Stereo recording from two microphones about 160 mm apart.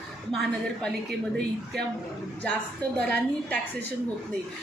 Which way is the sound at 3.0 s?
10° left (ahead or behind).